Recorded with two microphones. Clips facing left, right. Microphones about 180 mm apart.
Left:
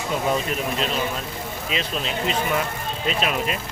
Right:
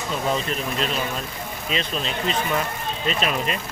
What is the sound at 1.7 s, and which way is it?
Speech, 5° left (ahead or behind).